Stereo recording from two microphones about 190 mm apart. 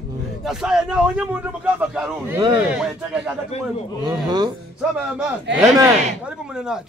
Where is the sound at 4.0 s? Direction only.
25° right (ahead or behind).